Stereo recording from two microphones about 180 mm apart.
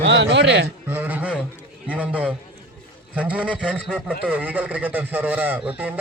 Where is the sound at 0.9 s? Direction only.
10° right (ahead or behind).